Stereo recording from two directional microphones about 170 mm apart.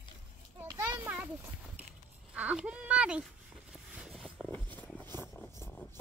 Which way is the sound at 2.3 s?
5° right (ahead or behind).